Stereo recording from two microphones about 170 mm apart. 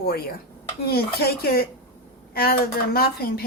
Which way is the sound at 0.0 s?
65° left (ahead or behind).